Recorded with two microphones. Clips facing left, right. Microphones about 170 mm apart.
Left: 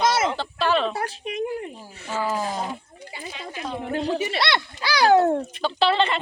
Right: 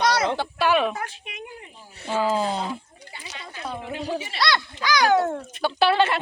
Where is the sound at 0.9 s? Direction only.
40° left (ahead or behind).